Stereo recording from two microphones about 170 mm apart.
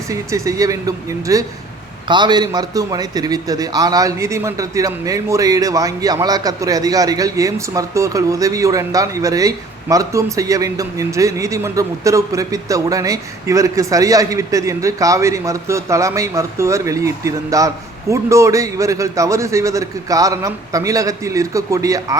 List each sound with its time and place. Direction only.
0.1 s a man's voice: 20° right (ahead or behind)